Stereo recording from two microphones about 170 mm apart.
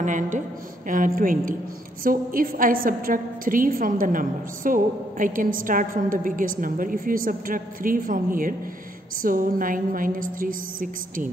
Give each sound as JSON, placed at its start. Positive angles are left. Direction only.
{"t": 0.0, "sound": "a woman's voice", "side_deg": -50}